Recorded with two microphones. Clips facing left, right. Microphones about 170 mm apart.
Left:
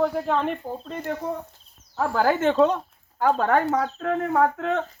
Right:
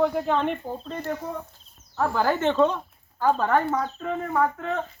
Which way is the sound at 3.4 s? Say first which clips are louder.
Left 2 dB; 70° left (ahead or behind).